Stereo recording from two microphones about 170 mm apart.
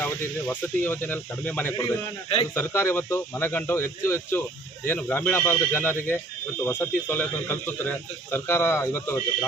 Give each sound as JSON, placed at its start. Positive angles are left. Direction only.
{"t": 0.0, "sound": "speech", "side_deg": 10}